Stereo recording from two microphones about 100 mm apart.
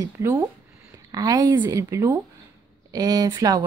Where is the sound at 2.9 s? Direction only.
40° right (ahead or behind).